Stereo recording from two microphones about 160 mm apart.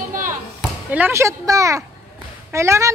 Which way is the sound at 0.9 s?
15° right (ahead or behind).